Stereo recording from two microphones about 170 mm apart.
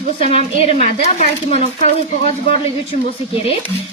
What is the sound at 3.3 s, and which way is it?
Speech, 35° left (ahead or behind).